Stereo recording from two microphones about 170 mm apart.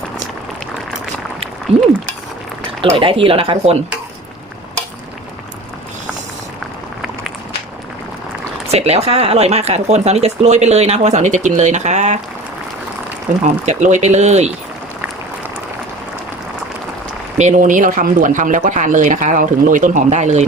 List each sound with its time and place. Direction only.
1.7 s speech: 35° right (ahead or behind)
8.7 s speech: 40° right (ahead or behind)
13.4 s speech: 45° right (ahead or behind)
17.3 s speech: 45° right (ahead or behind)